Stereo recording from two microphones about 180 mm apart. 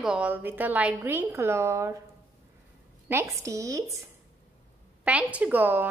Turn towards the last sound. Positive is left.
turn(degrees=-10)  # may be behind; listen again after turning